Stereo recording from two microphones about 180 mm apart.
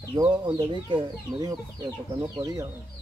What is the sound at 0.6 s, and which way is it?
Speech, 25° right (ahead or behind).